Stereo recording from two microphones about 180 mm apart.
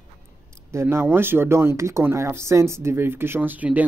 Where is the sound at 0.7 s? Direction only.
15° right (ahead or behind).